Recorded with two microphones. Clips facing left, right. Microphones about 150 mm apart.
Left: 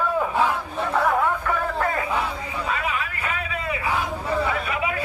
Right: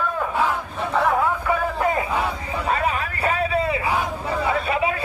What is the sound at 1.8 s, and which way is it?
Crowd, 20° right (ahead or behind).